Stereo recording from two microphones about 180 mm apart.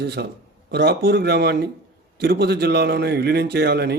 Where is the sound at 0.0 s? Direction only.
65° right (ahead or behind).